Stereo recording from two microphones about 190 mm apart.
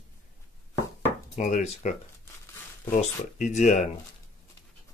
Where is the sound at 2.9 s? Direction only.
40° left (ahead or behind).